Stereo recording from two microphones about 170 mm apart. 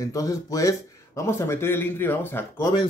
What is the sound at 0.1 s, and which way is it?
Speech, 20° left (ahead or behind).